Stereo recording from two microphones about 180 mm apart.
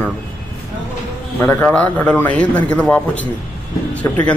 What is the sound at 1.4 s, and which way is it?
A man's voice, 10° left (ahead or behind).